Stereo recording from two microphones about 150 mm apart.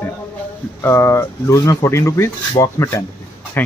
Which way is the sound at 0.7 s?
20° left (ahead or behind).